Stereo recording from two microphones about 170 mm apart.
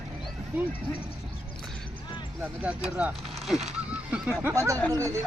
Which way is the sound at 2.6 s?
10° right (ahead or behind).